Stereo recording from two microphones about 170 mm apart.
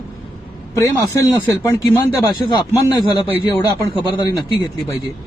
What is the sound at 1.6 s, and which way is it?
Speech, 20° left (ahead or behind).